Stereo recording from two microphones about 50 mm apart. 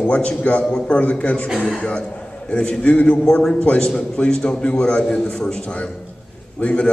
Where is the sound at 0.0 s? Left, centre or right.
Left.